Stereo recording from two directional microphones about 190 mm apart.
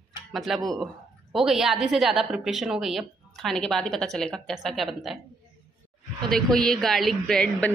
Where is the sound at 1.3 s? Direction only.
Centre (ahead or behind).